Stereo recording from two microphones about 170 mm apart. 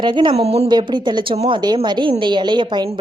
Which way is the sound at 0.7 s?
25° right (ahead or behind).